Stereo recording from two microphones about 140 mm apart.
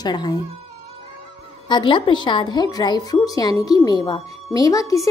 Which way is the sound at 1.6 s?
35° left (ahead or behind).